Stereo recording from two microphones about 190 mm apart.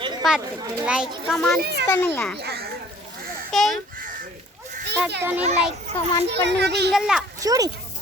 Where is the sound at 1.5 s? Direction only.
55° right (ahead or behind).